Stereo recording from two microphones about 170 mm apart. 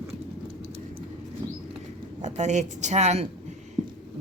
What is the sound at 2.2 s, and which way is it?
A woman's voice, 45° right (ahead or behind).